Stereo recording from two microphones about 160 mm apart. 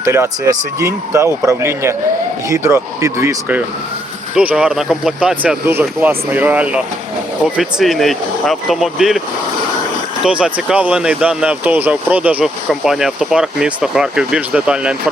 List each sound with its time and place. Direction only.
0.0 s speech: 20° right (ahead or behind)
4.4 s speech: 5° right (ahead or behind)
10.2 s speech: 5° right (ahead or behind)